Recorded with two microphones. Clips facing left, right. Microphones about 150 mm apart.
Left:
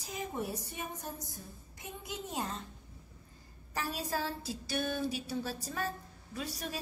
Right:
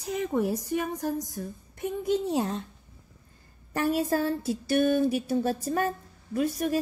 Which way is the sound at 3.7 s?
60° right (ahead or behind).